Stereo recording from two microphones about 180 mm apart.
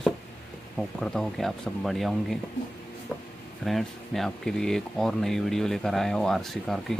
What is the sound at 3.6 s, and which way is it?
Speech, centre (ahead or behind).